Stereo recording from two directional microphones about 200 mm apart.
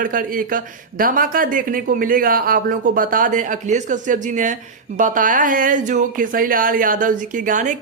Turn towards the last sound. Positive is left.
turn(degrees=-40)  # may be behind; listen again after turning